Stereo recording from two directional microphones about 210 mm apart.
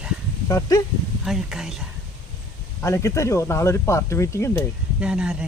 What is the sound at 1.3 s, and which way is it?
Speech, centre (ahead or behind).